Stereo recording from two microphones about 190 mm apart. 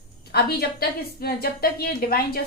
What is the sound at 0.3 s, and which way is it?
A woman's voice, 55° left (ahead or behind).